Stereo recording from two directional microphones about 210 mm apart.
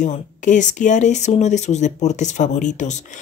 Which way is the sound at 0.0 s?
35° left (ahead or behind).